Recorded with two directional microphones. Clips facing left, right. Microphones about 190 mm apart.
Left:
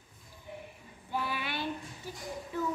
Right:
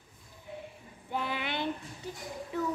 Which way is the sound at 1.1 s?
20° right (ahead or behind).